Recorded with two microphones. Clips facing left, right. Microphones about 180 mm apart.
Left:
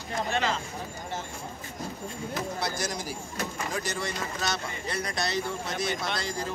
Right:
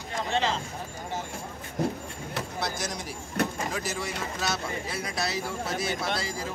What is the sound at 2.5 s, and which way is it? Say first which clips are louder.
A man's voice: left 1 dB; centre (ahead or behind).